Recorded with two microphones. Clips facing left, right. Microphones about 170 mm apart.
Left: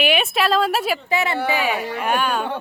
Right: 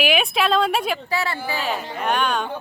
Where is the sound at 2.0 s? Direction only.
5° left (ahead or behind).